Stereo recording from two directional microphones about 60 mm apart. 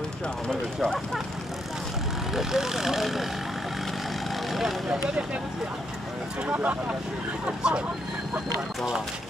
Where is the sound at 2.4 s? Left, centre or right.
Centre.